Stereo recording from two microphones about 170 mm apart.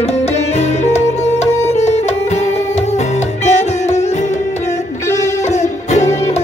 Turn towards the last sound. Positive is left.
turn(degrees=40)  # may be behind; listen again after turning